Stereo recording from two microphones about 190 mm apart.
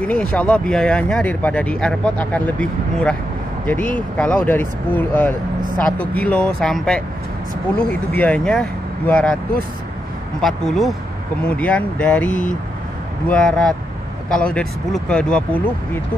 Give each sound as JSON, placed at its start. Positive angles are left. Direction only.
{"t": 0.0, "sound": "speech", "side_deg": 5}
{"t": 10.4, "sound": "speech", "side_deg": 0}